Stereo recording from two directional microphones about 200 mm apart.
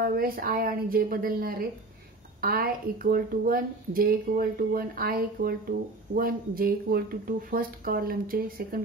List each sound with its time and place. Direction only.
0.0 s speech: 50° right (ahead or behind)